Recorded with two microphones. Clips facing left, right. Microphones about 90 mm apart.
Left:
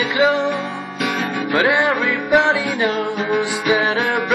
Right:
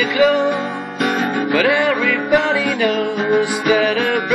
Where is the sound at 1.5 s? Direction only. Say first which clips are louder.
Even; 25° left (ahead or behind).